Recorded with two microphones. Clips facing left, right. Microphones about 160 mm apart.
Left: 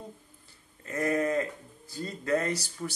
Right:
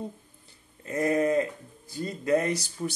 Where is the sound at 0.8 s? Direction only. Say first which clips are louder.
Right 3 dB; 20° right (ahead or behind).